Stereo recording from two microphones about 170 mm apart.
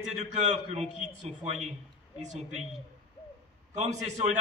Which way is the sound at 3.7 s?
40° right (ahead or behind).